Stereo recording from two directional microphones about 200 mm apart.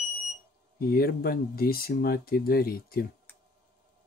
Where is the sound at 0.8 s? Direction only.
50° left (ahead or behind).